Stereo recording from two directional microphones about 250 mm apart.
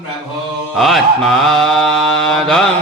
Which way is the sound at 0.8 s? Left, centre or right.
Centre.